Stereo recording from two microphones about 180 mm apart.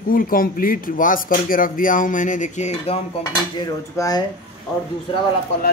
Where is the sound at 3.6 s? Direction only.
20° left (ahead or behind).